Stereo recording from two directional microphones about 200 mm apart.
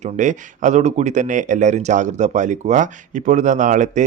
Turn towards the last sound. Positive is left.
turn(degrees=-40)  # may be behind; listen again after turning